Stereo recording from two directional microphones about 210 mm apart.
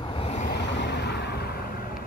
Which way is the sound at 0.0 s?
25° left (ahead or behind).